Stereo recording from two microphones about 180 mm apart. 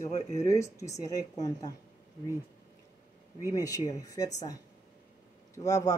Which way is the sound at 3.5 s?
20° left (ahead or behind).